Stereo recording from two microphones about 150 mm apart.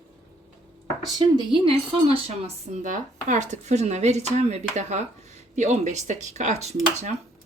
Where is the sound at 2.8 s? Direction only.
55° right (ahead or behind).